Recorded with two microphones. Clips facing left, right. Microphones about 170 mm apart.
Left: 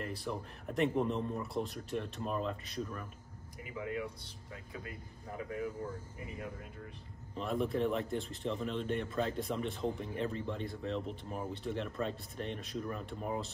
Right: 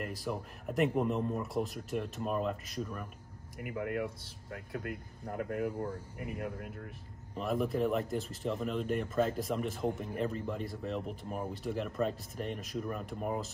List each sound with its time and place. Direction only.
0.2 s speech: 5° right (ahead or behind)
3.6 s speech: 60° right (ahead or behind)
7.3 s speech: 5° right (ahead or behind)